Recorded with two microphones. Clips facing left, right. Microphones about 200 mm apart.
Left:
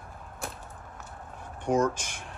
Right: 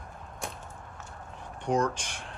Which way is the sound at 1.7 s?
5° left (ahead or behind).